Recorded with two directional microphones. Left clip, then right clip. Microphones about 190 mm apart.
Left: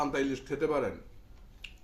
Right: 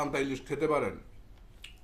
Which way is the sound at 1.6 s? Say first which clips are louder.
Left 2 dB; 15° right (ahead or behind).